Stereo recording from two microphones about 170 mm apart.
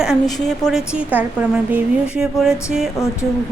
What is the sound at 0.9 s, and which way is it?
A woman's voice, 10° right (ahead or behind).